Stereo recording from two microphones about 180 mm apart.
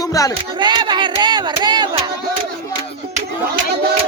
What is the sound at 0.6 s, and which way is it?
Music, 25° right (ahead or behind).